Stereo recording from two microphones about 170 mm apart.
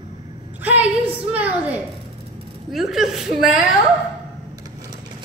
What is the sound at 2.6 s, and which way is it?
A woman's voice, centre (ahead or behind).